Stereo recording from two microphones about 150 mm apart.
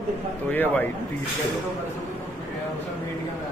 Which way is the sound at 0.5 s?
10° left (ahead or behind).